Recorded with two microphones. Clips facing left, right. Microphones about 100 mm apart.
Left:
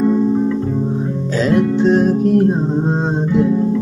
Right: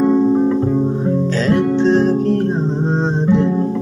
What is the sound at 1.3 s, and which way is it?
Guitar, 10° left (ahead or behind).